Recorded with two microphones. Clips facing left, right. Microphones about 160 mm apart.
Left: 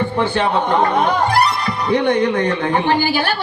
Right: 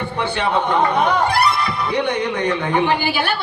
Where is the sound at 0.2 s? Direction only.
45° left (ahead or behind).